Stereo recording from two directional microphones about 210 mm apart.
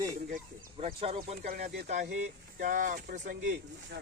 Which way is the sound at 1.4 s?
45° right (ahead or behind).